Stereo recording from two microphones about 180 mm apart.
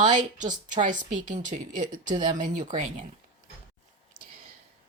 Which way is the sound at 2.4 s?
45° right (ahead or behind).